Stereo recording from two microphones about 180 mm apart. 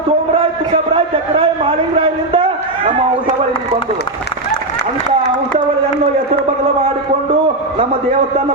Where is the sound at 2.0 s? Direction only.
30° right (ahead or behind).